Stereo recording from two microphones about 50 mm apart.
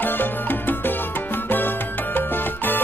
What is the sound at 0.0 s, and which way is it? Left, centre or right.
Music, left.